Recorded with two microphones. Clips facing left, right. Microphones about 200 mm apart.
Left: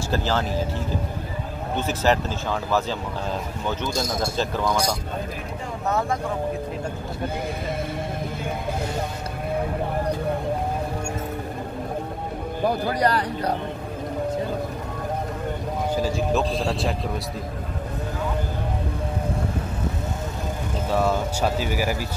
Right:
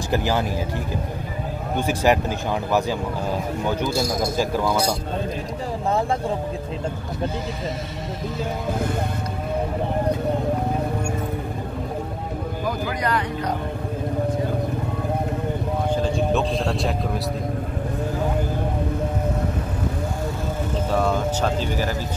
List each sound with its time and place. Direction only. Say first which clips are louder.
0.1 s speech: right 3 dB; 15° right (ahead or behind)
1.8 s speech: right 2 dB; 15° right (ahead or behind)
4.4 s speech: right 2 dB; 10° right (ahead or behind)
12.6 s speech: left 4 dB; 35° left (ahead or behind)
15.9 s a man's voice: right 1 dB; 5° left (ahead or behind)
20.9 s speech: even; 5° left (ahead or behind)